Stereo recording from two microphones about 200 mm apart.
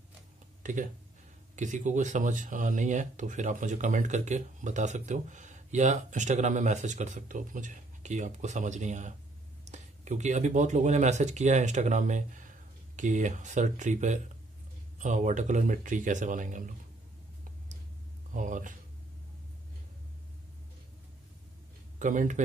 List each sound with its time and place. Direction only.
1.6 s speech: 35° right (ahead or behind)
18.3 s speech: 40° right (ahead or behind)
21.9 s speech: 40° right (ahead or behind)